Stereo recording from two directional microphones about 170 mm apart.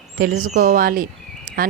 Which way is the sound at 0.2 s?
60° right (ahead or behind).